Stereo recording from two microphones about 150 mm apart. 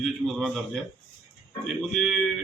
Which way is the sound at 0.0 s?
Centre (ahead or behind).